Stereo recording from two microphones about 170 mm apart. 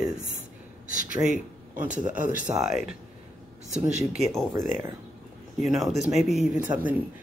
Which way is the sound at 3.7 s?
45° right (ahead or behind).